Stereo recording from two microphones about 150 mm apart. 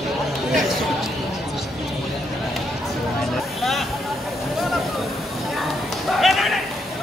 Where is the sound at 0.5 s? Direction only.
Centre (ahead or behind).